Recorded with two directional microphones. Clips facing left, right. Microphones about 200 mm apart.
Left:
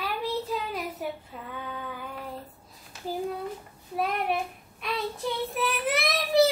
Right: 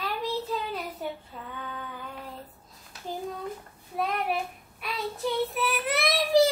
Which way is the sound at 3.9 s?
Centre (ahead or behind).